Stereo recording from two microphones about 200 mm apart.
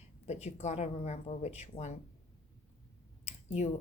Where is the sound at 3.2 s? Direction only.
30° left (ahead or behind).